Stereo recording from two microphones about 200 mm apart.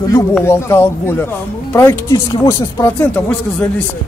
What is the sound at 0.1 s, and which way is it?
Speech, 15° left (ahead or behind).